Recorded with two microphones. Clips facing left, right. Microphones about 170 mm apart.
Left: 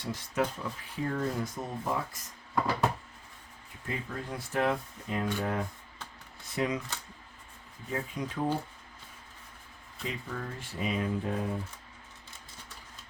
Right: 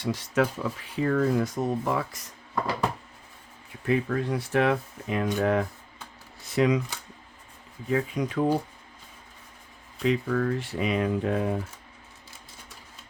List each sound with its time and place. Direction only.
0.0 s speech: 80° right
3.8 s speech: 80° right
7.9 s speech: 90° right
10.0 s speech: 80° right